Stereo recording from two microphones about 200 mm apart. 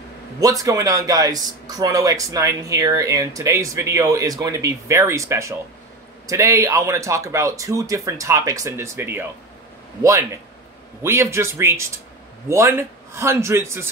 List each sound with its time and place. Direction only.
0.4 s speech: 15° right (ahead or behind)
11.0 s speech: 15° right (ahead or behind)